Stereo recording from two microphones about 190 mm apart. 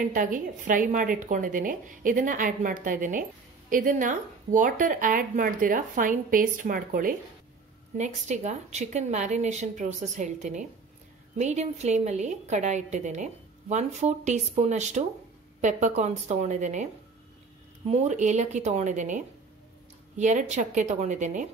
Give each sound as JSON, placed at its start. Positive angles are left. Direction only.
{"t": 0.0, "sound": "a woman's voice", "side_deg": -45}
{"t": 17.8, "sound": "a woman's voice", "side_deg": -35}